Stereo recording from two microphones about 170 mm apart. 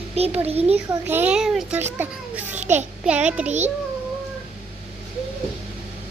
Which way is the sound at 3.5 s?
40° right (ahead or behind).